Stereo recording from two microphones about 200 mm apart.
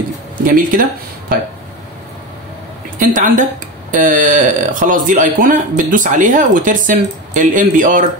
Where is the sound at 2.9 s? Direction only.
40° right (ahead or behind).